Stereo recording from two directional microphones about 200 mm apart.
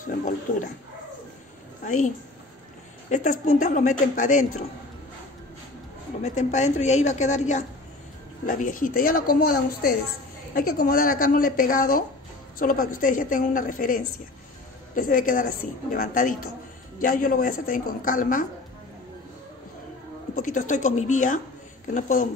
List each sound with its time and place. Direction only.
0.0 s speech: 40° left (ahead or behind)
3.1 s speech: 40° left (ahead or behind)
6.2 s speech: 35° left (ahead or behind)
20.3 s speech: 40° left (ahead or behind)